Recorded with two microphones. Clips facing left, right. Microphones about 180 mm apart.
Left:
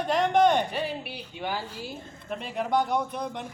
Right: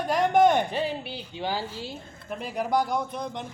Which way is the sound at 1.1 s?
30° right (ahead or behind).